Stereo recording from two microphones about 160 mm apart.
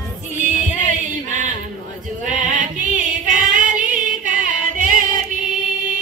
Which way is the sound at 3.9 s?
55° right (ahead or behind).